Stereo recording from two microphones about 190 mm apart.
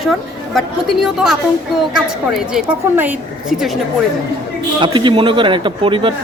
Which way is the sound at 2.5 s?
10° right (ahead or behind).